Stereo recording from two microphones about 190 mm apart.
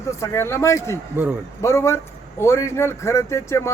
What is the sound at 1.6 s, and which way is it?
A man's voice, 15° left (ahead or behind).